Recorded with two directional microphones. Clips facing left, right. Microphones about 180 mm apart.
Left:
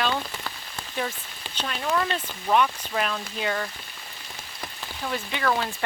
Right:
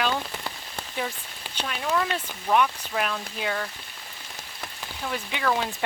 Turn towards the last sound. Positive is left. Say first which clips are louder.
# even
turn(degrees=-10)  # may be behind; listen again after turning